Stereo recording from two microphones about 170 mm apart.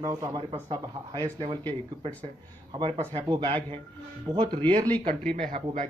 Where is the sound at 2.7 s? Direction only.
30° right (ahead or behind).